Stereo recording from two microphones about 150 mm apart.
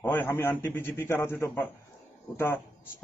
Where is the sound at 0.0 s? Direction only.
15° left (ahead or behind).